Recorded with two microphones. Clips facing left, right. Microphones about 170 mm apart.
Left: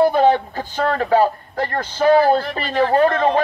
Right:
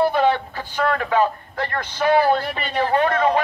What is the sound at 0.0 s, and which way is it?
A man's voice, 45° left (ahead or behind).